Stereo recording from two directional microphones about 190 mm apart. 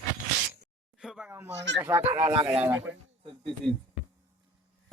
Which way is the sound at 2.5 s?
10° right (ahead or behind).